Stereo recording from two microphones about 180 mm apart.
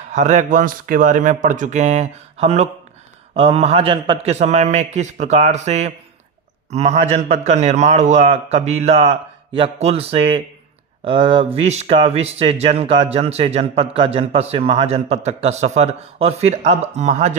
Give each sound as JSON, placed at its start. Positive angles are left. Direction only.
{"t": 0.1, "sound": "a man's voice", "side_deg": -40}